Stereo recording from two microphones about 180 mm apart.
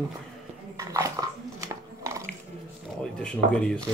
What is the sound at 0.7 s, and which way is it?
Dog, 20° right (ahead or behind).